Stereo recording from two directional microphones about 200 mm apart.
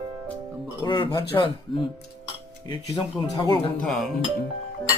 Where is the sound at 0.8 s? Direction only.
20° left (ahead or behind).